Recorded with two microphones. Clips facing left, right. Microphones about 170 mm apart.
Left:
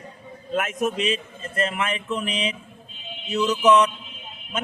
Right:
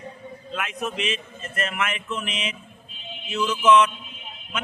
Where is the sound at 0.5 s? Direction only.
45° left (ahead or behind).